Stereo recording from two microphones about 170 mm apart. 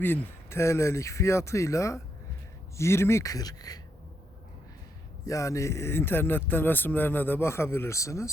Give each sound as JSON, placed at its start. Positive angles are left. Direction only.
{"t": 0.0, "sound": "speech", "side_deg": 15}
{"t": 5.2, "sound": "speech", "side_deg": 20}